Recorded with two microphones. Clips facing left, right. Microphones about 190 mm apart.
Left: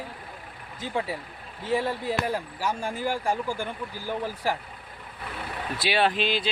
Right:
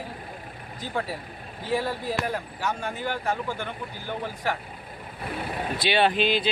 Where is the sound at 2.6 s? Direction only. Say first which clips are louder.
Left 1 dB; 10° left (ahead or behind).